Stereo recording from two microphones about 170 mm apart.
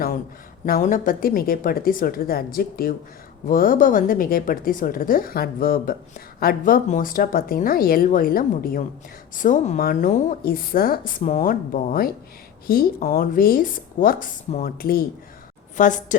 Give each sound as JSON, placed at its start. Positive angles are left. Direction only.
{"t": 0.6, "sound": "a woman's voice", "side_deg": 55}
{"t": 15.8, "sound": "a woman's voice", "side_deg": 50}